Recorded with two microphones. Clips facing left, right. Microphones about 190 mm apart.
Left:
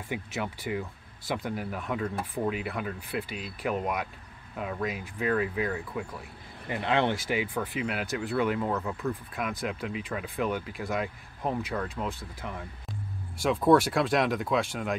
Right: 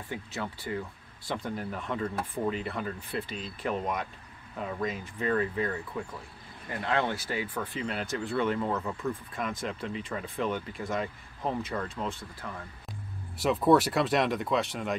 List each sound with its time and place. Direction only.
0.4 s speech: 15° left (ahead or behind)
6.7 s speech: 20° left (ahead or behind)
7.5 s speech: 10° left (ahead or behind)
12.4 s speech: 20° left (ahead or behind)
13.4 s speech: centre (ahead or behind)